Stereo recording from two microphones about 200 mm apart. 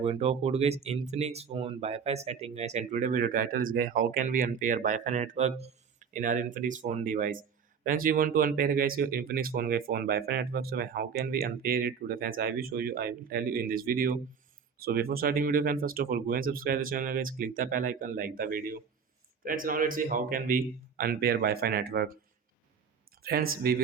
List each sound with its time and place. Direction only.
0.0 s speech: 30° right (ahead or behind); by 22.2 s 50° right (ahead or behind)
23.2 s speech: 50° right (ahead or behind)